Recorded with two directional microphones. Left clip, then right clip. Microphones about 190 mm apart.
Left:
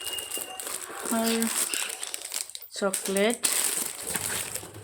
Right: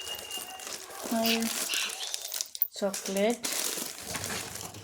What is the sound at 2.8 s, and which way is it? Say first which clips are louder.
Speech: left 3 dB; 35° left (ahead or behind).